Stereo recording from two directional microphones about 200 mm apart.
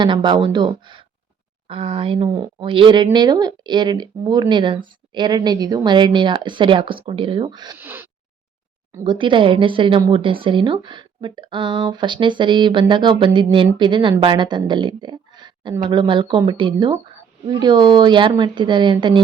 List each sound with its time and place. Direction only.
0.0 s a woman's voice: 25° right (ahead or behind)
7.8 s a sound: 10° right (ahead or behind)
8.9 s speech: 15° right (ahead or behind)
9.1 s a woman's voice: 25° right (ahead or behind)